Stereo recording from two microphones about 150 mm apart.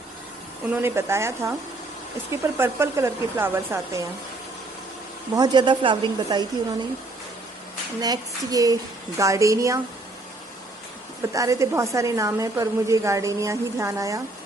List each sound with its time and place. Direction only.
0.7 s speech: 15° right (ahead or behind)
5.3 s a woman's voice: 30° right (ahead or behind)
8.0 s a woman's voice: 25° right (ahead or behind)
11.3 s a woman's voice: 20° right (ahead or behind)